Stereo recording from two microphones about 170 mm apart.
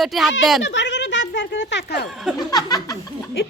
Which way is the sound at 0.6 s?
90° left.